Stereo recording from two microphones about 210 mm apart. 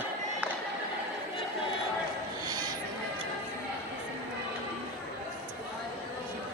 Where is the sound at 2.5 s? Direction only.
20° right (ahead or behind).